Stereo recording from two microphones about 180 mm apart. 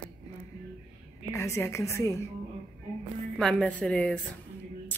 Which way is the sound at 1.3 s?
15° left (ahead or behind).